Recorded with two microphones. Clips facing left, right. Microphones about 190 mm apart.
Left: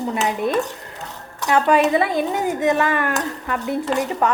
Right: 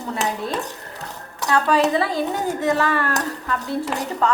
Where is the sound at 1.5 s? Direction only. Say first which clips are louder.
Left 2 dB; 20° left (ahead or behind).